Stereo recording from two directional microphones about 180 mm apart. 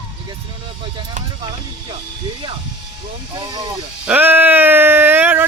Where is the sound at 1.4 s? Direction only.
25° right (ahead or behind).